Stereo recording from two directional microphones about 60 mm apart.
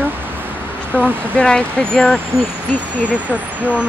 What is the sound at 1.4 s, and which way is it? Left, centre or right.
Speech, centre.